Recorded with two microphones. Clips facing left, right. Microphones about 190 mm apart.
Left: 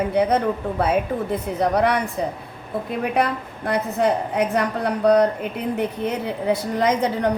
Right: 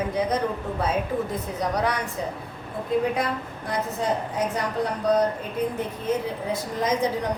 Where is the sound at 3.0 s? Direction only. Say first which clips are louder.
Left 3 dB; 65° left (ahead or behind).